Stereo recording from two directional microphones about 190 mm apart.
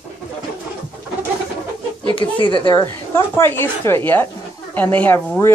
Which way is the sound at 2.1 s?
25° left (ahead or behind).